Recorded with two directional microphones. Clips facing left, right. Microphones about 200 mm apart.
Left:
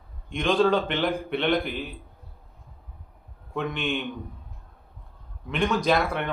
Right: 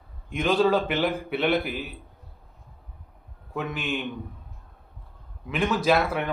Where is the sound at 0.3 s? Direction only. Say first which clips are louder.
Even; 5° right (ahead or behind).